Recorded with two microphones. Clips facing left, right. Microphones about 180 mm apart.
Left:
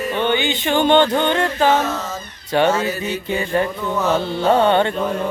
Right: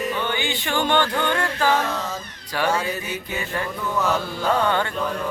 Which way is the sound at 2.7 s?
10° right (ahead or behind).